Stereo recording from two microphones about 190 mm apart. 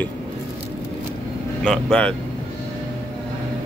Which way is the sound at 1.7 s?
5° left (ahead or behind).